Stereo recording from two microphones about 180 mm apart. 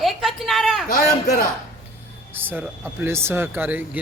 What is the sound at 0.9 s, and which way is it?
Speech, 50° left (ahead or behind).